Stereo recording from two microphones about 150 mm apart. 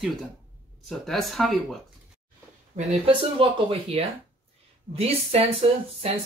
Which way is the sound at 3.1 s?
35° right (ahead or behind).